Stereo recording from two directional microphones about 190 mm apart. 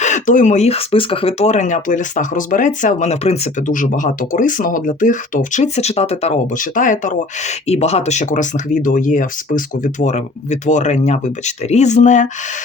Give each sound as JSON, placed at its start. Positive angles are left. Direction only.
{"t": 0.0, "sound": "speech", "side_deg": 40}